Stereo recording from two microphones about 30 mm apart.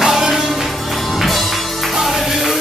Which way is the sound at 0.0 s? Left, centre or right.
Centre.